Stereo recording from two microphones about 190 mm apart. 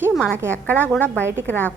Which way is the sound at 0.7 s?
10° right (ahead or behind).